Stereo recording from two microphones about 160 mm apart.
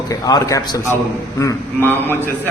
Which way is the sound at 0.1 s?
20° left (ahead or behind).